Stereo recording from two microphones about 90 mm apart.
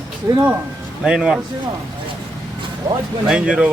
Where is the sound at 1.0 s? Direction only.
10° right (ahead or behind).